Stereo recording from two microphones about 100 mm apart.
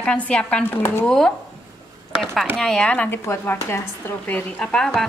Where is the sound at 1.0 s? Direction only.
5° left (ahead or behind).